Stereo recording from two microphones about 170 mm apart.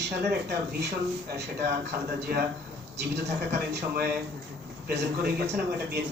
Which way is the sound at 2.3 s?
60° right (ahead or behind).